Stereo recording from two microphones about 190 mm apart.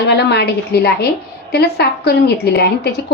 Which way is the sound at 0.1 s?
60° left (ahead or behind).